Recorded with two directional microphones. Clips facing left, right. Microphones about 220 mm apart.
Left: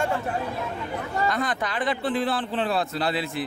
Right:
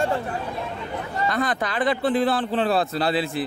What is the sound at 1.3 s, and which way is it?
A man's voice, 35° right (ahead or behind).